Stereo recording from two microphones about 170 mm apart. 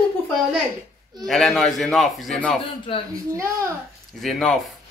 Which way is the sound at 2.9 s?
30° left (ahead or behind).